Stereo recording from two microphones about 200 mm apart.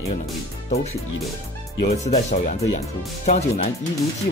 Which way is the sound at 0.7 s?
30° left (ahead or behind).